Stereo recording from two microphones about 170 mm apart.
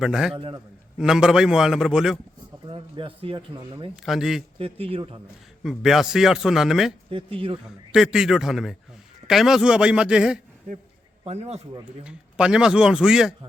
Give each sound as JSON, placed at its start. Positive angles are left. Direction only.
{"t": 0.0, "sound": "a man's voice", "side_deg": -5}
{"t": 0.3, "sound": "speech", "side_deg": -30}
{"t": 0.9, "sound": "a man's voice", "side_deg": -5}
{"t": 2.6, "sound": "speech", "side_deg": -30}
{"t": 4.0, "sound": "a man's voice", "side_deg": 0}
{"t": 4.5, "sound": "speech", "side_deg": -35}
{"t": 5.6, "sound": "a man's voice", "side_deg": 0}
{"t": 7.1, "sound": "speech", "side_deg": -30}
{"t": 7.9, "sound": "a man's voice", "side_deg": -5}
{"t": 11.3, "sound": "speech", "side_deg": -40}
{"t": 12.0, "sound": "a man's voice", "side_deg": -5}